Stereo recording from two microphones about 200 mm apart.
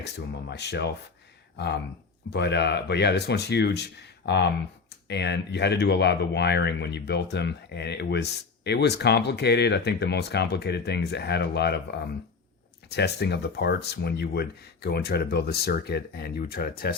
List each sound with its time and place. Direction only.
0.0 s speech: 55° left (ahead or behind)